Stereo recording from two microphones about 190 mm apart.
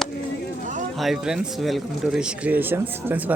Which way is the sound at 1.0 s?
Centre (ahead or behind).